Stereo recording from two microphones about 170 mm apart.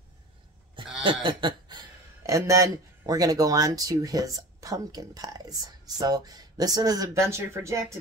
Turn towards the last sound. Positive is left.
turn(degrees=-15)  # may be behind; listen again after turning